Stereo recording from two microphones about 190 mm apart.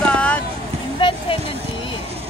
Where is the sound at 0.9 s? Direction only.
25° left (ahead or behind).